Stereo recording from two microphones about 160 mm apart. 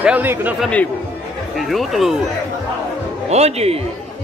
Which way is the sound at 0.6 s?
10° left (ahead or behind).